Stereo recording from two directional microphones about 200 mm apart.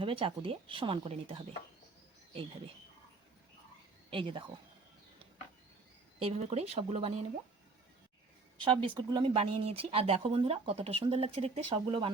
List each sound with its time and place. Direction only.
0.0 s speech: 25° right (ahead or behind)
4.1 s speech: 25° right (ahead or behind)
6.1 s speech: 30° right (ahead or behind)
8.6 s speech: 25° right (ahead or behind)